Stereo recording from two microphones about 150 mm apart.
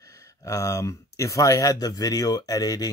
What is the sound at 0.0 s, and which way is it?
Speech, 20° left (ahead or behind).